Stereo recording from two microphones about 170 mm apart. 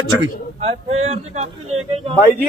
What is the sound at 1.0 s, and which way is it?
Speech, 40° right (ahead or behind).